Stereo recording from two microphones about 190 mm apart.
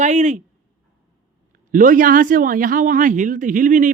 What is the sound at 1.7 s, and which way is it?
Speech, 45° right (ahead or behind).